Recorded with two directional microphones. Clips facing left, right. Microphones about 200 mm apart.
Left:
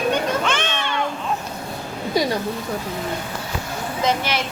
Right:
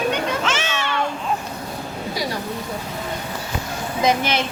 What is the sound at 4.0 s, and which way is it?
Speech, 15° right (ahead or behind).